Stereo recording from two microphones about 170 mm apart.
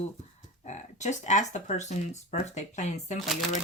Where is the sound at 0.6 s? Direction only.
45° left (ahead or behind).